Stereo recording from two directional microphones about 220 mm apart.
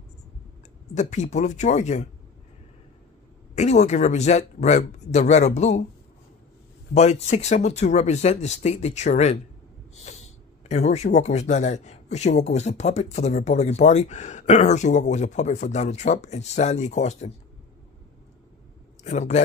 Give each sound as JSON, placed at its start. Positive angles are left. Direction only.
{"t": 0.9, "sound": "speech", "side_deg": 30}
{"t": 3.5, "sound": "speech", "side_deg": 30}
{"t": 6.9, "sound": "speech", "side_deg": 30}
{"t": 19.0, "sound": "speech", "side_deg": 30}